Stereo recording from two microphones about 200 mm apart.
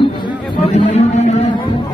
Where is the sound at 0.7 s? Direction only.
35° left (ahead or behind).